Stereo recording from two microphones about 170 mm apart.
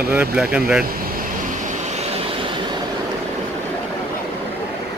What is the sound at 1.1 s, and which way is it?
Vehicle, 45° right (ahead or behind).